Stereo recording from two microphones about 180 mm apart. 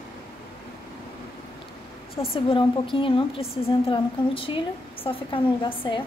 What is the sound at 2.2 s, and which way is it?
Speech, 15° left (ahead or behind).